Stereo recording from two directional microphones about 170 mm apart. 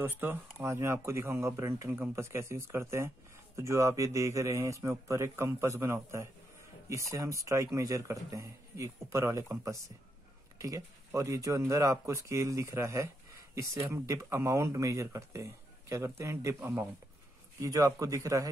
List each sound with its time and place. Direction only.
0.0 s speech: 10° right (ahead or behind)